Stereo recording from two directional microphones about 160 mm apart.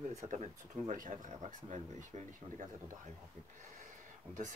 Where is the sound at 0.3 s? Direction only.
50° right (ahead or behind).